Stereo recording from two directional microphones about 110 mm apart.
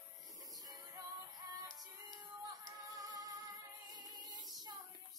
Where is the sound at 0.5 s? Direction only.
35° right (ahead or behind).